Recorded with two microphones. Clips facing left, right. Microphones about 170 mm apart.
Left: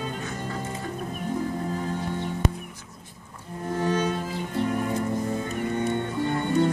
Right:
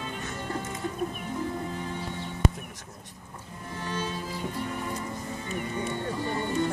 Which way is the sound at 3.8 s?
50° left (ahead or behind).